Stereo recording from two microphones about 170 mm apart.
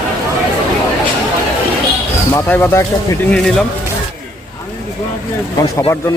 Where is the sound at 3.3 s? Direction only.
5° left (ahead or behind).